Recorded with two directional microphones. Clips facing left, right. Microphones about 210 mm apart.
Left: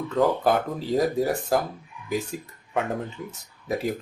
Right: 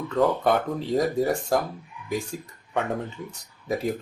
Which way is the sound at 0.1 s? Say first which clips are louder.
Even; centre (ahead or behind).